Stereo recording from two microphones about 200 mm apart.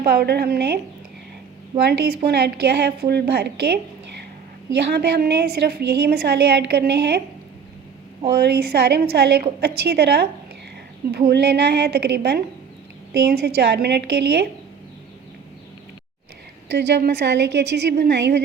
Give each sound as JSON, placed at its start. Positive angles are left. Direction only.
{"t": 0.1, "sound": "a woman's voice", "side_deg": -55}
{"t": 1.8, "sound": "a woman's voice", "side_deg": -55}
{"t": 4.9, "sound": "a woman's voice", "side_deg": -50}
{"t": 8.3, "sound": "a woman's voice", "side_deg": -55}
{"t": 16.6, "sound": "a woman's voice", "side_deg": -55}